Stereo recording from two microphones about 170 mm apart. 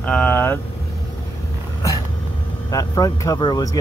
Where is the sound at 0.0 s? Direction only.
10° left (ahead or behind).